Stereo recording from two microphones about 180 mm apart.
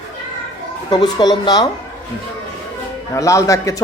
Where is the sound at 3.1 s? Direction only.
15° left (ahead or behind).